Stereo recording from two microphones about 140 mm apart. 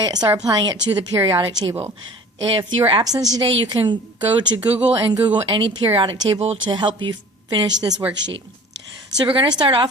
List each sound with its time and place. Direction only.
0.0 s a woman's voice: 30° right (ahead or behind)
9.1 s a woman's voice: 35° right (ahead or behind)